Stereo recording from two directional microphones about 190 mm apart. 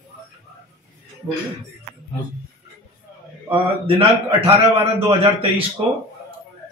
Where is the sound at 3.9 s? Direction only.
30° right (ahead or behind).